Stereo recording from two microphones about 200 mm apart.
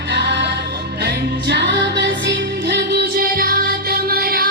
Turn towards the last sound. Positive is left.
turn(degrees=-50)  # may be behind; listen again after turning